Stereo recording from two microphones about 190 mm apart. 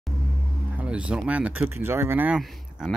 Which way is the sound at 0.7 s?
5° right (ahead or behind).